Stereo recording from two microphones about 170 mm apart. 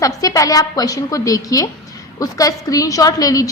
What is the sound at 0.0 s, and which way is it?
A woman's voice, 20° left (ahead or behind).